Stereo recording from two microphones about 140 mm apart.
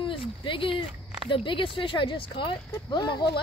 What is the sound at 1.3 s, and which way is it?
Speech, 35° left (ahead or behind).